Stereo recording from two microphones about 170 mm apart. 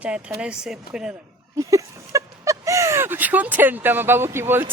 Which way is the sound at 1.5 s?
20° right (ahead or behind).